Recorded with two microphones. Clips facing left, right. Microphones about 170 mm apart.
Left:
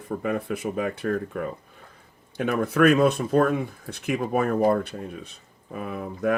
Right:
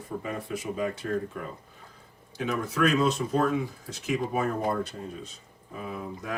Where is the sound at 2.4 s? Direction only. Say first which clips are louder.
Left 6 dB; 55° left (ahead or behind).